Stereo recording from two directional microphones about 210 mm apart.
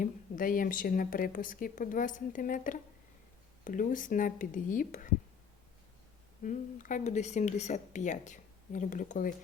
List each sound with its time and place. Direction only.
0.0 s a woman's voice: 40° left (ahead or behind)
6.4 s a woman's voice: 40° left (ahead or behind)